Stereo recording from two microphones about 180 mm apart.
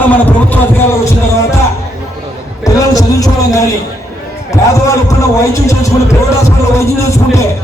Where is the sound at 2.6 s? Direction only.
20° left (ahead or behind).